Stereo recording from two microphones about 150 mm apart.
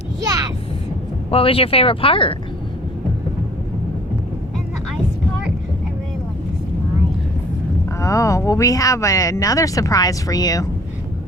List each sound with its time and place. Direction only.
0.3 s vehicle: 25° right (ahead or behind)
1.3 s speech: 40° left (ahead or behind)
7.9 s speech: 20° left (ahead or behind)